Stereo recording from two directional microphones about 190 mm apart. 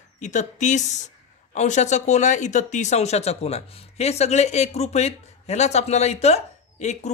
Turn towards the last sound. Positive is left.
turn(degrees=35)  # may be behind; listen again after turning